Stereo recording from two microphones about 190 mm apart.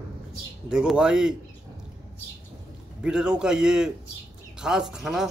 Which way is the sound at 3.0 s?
5° right (ahead or behind).